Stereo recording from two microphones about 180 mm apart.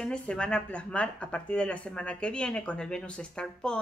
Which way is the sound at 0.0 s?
5° left (ahead or behind).